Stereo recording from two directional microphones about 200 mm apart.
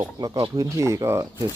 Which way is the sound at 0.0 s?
20° right (ahead or behind).